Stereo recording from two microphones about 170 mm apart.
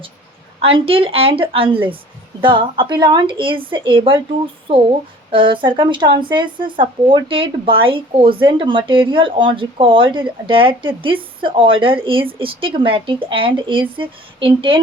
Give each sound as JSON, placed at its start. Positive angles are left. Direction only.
{"t": 0.6, "sound": "speech", "side_deg": -35}